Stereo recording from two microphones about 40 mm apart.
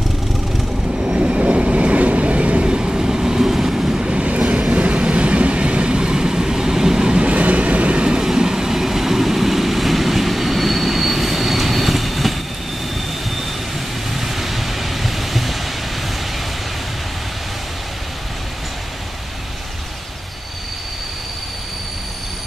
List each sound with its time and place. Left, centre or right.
1.1 s train: right
7.2 s vehicle: right
8.2 s vehicle: centre
14.1 s vehicle: centre